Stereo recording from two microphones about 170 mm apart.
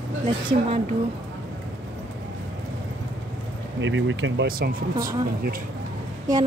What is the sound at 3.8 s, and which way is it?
Speech, 90° right.